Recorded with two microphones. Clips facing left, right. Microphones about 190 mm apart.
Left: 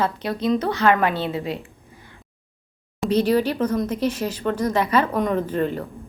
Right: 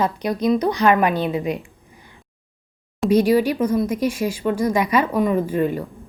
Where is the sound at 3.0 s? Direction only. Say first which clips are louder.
Right 3 dB; 10° right (ahead or behind).